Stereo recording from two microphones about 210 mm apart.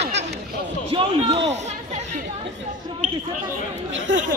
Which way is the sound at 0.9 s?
30° right (ahead or behind).